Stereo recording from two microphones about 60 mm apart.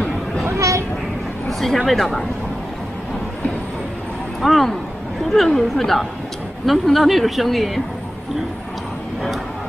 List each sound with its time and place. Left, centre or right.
0.6 s vehicle: right
1.6 s a woman's voice: centre
4.4 s a woman's voice: centre